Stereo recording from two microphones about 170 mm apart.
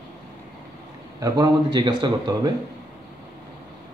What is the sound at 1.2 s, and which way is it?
A man's voice, 20° right (ahead or behind).